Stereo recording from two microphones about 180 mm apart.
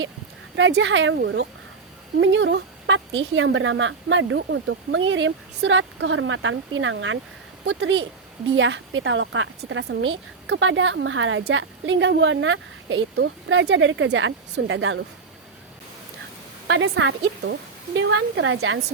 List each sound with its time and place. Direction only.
0.5 s a woman's voice: 90° right; by 1.5 s 70° right (ahead or behind)
2.2 s a woman's voice: 90° right
16.6 s a woman's voice: 85° right